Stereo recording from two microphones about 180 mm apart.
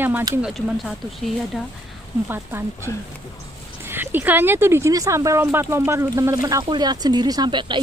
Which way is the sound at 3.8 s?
10° right (ahead or behind).